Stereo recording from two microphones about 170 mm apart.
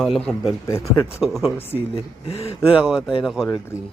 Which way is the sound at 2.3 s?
35° left (ahead or behind).